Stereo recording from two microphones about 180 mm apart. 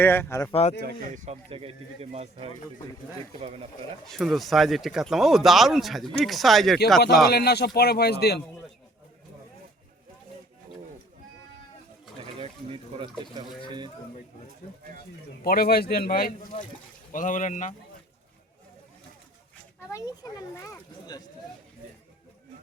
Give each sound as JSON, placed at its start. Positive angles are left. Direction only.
{"t": 0.0, "sound": "speech", "side_deg": 10}
{"t": 0.5, "sound": "speech", "side_deg": 40}
{"t": 1.1, "sound": "speech", "side_deg": -40}
{"t": 4.0, "sound": "speech", "side_deg": 0}
{"t": 7.3, "sound": "speech", "side_deg": 60}
{"t": 12.4, "sound": "speech", "side_deg": -30}
{"t": 15.4, "sound": "speech", "side_deg": 55}
{"t": 19.9, "sound": "speech", "side_deg": 20}